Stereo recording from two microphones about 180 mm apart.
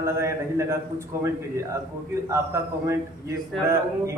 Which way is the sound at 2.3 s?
15° right (ahead or behind).